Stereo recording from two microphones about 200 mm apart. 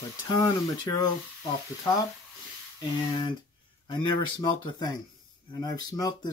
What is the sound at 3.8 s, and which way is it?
Speech, 25° left (ahead or behind).